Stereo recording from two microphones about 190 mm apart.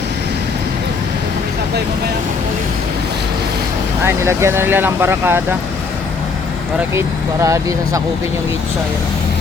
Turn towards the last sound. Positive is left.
turn(degrees=-15)  # may be behind; listen again after turning